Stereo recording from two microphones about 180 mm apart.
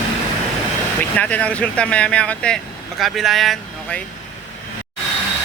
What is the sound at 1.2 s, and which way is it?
Speech, 5° left (ahead or behind).